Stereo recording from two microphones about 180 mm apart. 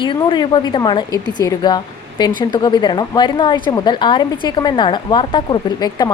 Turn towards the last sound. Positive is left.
turn(degrees=20)  # may be behind; listen again after turning